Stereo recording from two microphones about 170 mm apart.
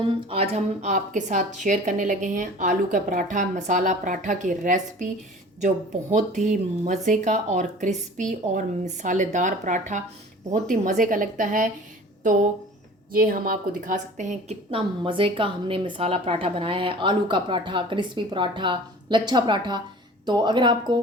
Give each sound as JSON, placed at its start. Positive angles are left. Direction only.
{"t": 0.0, "sound": "a woman's voice", "side_deg": -30}
{"t": 14.7, "sound": "a woman's voice", "side_deg": -30}